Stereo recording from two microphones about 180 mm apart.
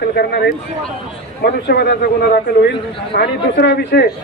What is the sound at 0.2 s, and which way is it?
A man's voice, 65° left (ahead or behind).